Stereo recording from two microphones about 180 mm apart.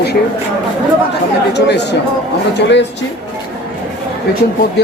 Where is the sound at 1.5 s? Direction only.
70° left (ahead or behind).